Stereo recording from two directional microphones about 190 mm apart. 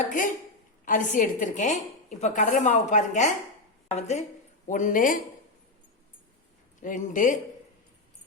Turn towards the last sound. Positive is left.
turn(degrees=45)  # may be behind; listen again after turning